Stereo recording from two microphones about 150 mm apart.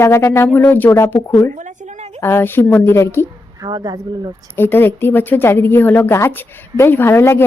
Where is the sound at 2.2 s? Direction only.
15° left (ahead or behind).